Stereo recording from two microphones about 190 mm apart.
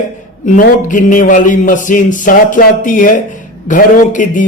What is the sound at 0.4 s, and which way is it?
A man's voice, 45° left (ahead or behind).